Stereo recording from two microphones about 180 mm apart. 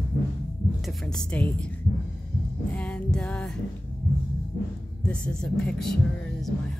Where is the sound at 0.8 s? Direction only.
5° left (ahead or behind).